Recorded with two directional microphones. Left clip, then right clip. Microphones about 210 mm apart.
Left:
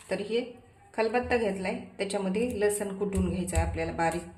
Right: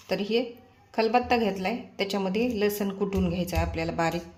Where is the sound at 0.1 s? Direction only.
35° right (ahead or behind).